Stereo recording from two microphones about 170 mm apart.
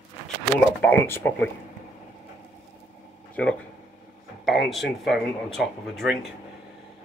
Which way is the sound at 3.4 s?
5° left (ahead or behind).